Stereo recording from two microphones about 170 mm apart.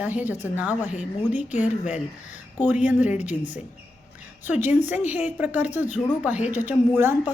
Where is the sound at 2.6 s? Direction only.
10° right (ahead or behind).